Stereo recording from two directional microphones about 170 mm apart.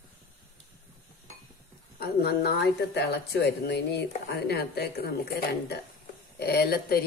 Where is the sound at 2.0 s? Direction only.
70° left (ahead or behind).